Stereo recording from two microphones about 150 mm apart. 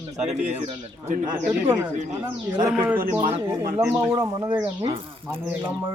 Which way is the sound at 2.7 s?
10° right (ahead or behind).